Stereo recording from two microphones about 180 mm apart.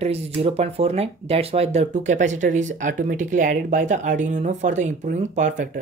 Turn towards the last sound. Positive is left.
turn(degrees=-45)  # may be behind; listen again after turning